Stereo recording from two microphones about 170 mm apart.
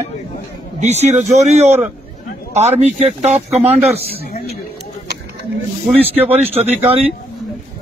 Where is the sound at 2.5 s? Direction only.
40° right (ahead or behind).